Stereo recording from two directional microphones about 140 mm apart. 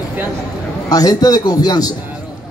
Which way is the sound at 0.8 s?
25° left (ahead or behind).